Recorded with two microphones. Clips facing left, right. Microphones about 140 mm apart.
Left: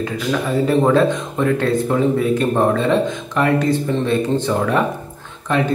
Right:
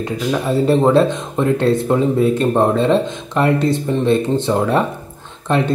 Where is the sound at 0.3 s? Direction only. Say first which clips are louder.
Right 2 dB; 25° right (ahead or behind).